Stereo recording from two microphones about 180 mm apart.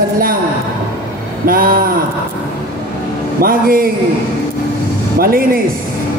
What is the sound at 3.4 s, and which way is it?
Speech, 55° right (ahead or behind).